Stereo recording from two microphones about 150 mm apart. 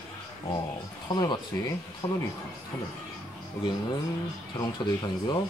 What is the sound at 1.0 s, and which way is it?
Speech, 30° left (ahead or behind).